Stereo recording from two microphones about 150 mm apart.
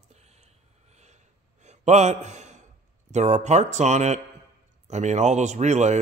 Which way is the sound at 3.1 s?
50° right (ahead or behind).